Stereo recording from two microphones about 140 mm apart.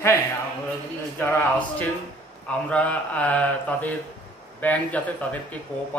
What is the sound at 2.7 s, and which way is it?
Speech, 10° left (ahead or behind).